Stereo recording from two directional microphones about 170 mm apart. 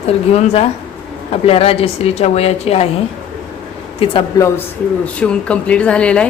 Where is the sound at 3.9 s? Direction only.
35° left (ahead or behind).